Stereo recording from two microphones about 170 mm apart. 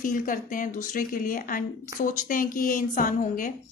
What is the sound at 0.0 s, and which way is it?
A woman's voice, 55° left (ahead or behind).